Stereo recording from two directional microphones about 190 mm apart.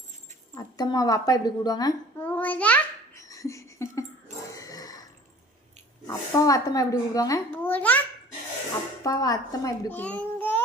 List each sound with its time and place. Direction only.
0.5 s a woman's voice: 20° left (ahead or behind)
2.2 s babbling: 10° left (ahead or behind)
3.2 s a sound: 15° left (ahead or behind)
6.1 s a child's voice: 20° left (ahead or behind)
9.0 s a woman's voice: 20° left (ahead or behind)
10.0 s a child's voice: 5° left (ahead or behind)